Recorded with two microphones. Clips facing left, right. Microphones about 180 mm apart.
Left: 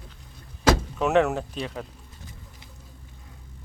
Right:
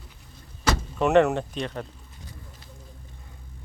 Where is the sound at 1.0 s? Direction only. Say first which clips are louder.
Right 2 dB; centre (ahead or behind).